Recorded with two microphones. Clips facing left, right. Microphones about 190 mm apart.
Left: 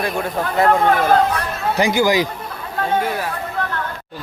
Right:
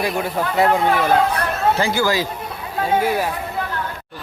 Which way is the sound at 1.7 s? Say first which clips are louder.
Left 3 dB; 15° left (ahead or behind).